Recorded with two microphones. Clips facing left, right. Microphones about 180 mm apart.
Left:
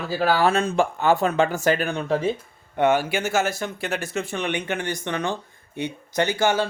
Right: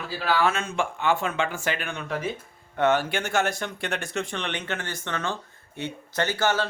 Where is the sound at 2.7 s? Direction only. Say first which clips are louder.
Left 3 dB; 10° left (ahead or behind).